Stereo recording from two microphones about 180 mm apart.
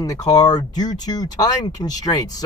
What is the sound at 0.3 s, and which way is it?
Speech, 20° left (ahead or behind).